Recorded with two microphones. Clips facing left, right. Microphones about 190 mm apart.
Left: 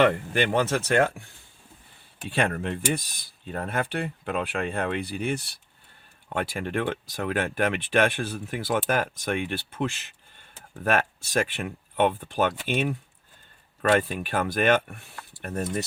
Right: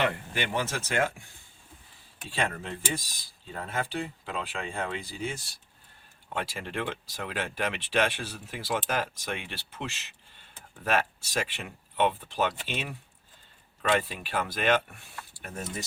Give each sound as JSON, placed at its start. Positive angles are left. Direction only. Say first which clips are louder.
{"t": 0.0, "sound": "speech", "louder": "left 8 dB", "side_deg": 55}
{"t": 2.2, "sound": "speech", "louder": "left 6 dB", "side_deg": 60}